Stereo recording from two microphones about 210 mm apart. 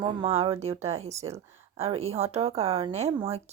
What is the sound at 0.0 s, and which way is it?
A woman's voice, 30° right (ahead or behind).